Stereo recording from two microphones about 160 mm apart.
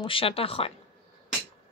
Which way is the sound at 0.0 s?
35° left (ahead or behind).